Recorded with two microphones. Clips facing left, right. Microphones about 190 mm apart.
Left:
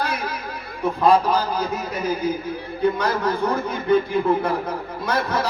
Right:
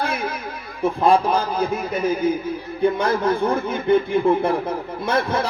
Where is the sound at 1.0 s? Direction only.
25° right (ahead or behind).